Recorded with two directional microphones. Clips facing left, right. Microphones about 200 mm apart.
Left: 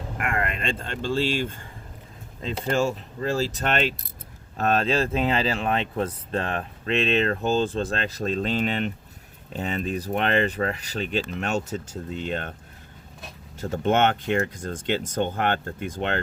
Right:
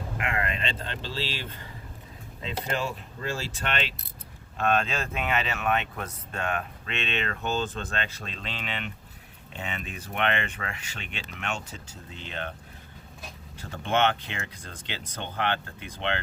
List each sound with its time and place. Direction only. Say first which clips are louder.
0.2 s speech: left 3 dB; 50° left (ahead or behind)
13.6 s speech: left 5 dB; 45° left (ahead or behind)